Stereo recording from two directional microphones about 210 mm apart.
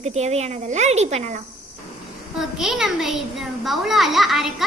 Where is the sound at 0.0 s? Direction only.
30° right (ahead or behind).